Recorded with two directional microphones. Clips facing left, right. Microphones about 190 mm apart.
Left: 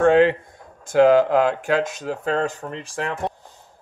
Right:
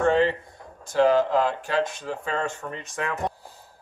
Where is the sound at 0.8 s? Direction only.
50° left (ahead or behind); by 3.3 s 30° left (ahead or behind).